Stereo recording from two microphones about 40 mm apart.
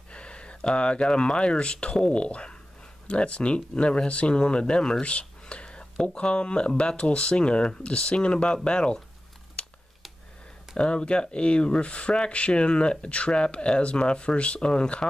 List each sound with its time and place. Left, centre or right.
0.1 s a sound: left
0.6 s speech: left
5.0 s whispering: left
6.1 s speech: left
9.6 s a sound: left
10.8 s speech: left